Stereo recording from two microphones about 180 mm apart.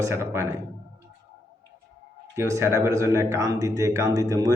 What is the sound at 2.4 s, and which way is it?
Speech, 15° right (ahead or behind).